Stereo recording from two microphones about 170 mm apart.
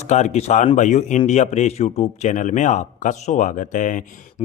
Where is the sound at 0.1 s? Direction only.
40° left (ahead or behind).